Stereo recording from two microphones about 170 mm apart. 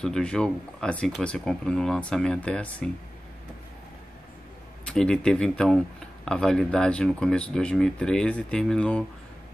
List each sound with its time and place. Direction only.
0.0 s speech: 5° left (ahead or behind)
4.8 s speech: 5° left (ahead or behind)